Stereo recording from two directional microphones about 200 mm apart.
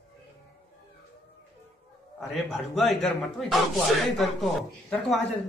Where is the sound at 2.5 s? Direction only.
Centre (ahead or behind).